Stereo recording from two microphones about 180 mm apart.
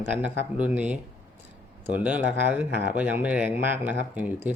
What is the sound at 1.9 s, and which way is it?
Speech, 10° right (ahead or behind).